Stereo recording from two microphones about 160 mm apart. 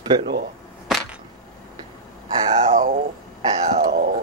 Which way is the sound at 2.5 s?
45° right (ahead or behind).